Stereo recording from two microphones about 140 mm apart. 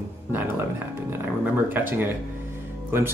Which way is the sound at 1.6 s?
15° right (ahead or behind).